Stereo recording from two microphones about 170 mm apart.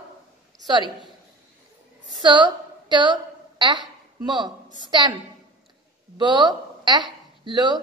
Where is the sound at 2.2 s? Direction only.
25° right (ahead or behind).